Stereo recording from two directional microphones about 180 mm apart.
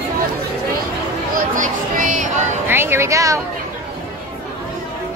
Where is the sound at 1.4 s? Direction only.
45° right (ahead or behind).